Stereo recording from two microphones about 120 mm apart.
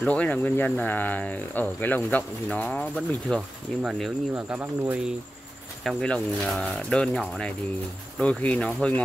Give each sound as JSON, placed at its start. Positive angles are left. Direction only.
{"t": 0.0, "sound": "speech", "side_deg": 10}
{"t": 3.3, "sound": "speech", "side_deg": -5}
{"t": 5.9, "sound": "speech", "side_deg": 5}